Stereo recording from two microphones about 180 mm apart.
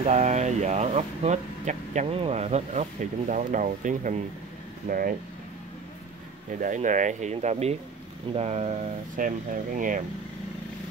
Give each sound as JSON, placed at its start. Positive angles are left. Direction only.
{"t": 0.0, "sound": "speech", "side_deg": -40}
{"t": 6.6, "sound": "speech", "side_deg": -45}